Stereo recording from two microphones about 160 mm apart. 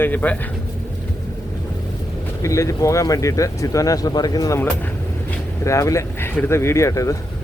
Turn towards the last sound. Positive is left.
turn(degrees=20)  # may be behind; listen again after turning